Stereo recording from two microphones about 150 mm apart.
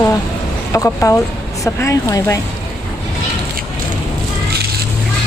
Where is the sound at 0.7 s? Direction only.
20° left (ahead or behind).